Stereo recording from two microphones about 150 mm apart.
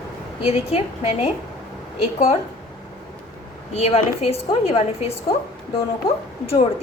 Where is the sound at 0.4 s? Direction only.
40° left (ahead or behind).